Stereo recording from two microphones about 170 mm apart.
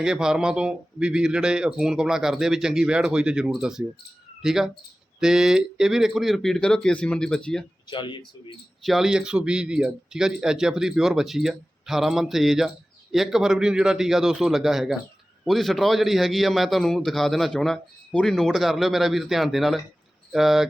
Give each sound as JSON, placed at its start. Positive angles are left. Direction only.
{"t": 0.0, "sound": "speech", "side_deg": -5}
{"t": 7.9, "sound": "speech", "side_deg": 30}
{"t": 8.8, "sound": "speech", "side_deg": 0}